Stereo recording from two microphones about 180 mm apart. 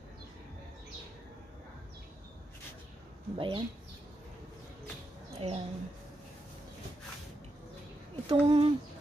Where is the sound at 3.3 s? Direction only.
30° right (ahead or behind).